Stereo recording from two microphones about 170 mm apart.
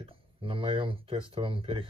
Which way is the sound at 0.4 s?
30° right (ahead or behind).